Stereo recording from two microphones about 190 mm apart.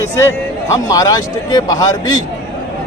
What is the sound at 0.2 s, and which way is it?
A man's voice, 15° left (ahead or behind).